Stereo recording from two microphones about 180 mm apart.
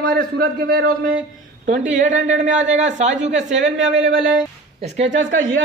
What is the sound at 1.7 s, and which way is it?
Speech, 45° right (ahead or behind).